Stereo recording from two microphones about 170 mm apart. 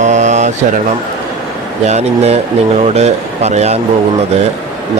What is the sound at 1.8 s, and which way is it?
A man's voice, 40° right (ahead or behind).